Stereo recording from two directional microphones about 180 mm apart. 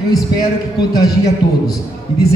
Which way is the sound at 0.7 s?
20° left (ahead or behind).